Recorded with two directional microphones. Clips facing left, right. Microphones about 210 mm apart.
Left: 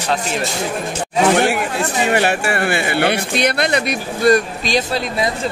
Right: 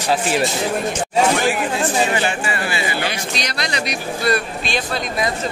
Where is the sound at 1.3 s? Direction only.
60° left (ahead or behind); by 5.3 s 30° left (ahead or behind).